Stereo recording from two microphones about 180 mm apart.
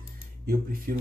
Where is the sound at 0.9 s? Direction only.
55° right (ahead or behind).